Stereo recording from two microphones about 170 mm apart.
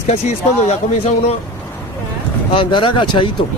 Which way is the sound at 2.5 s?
30° left (ahead or behind).